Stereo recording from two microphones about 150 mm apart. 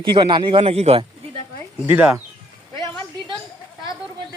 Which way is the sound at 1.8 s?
10° right (ahead or behind).